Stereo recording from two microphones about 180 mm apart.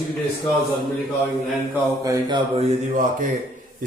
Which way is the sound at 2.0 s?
20° right (ahead or behind).